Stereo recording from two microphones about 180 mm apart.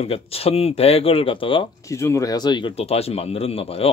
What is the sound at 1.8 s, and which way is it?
Speech, 15° left (ahead or behind).